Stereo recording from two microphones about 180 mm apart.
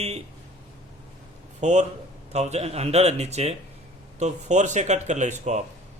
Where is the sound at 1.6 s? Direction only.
40° right (ahead or behind).